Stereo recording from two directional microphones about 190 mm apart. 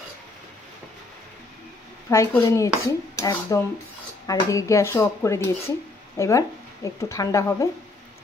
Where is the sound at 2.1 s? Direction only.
15° left (ahead or behind).